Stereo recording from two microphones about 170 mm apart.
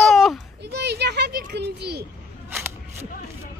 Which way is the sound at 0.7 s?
80° right.